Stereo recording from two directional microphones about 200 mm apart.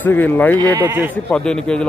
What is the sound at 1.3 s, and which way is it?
Speech, 5° left (ahead or behind).